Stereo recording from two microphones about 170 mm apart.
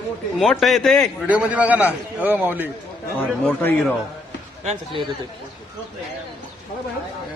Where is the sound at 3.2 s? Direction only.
10° left (ahead or behind).